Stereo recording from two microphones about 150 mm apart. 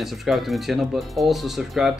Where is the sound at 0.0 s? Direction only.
Centre (ahead or behind).